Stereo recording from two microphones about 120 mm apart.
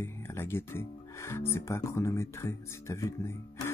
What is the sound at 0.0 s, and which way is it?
Speech, 20° left (ahead or behind).